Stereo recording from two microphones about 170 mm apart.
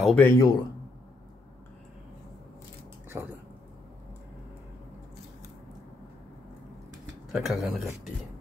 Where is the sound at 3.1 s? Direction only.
15° right (ahead or behind).